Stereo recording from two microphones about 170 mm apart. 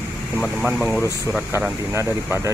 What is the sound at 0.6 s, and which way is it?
Speech, 10° right (ahead or behind).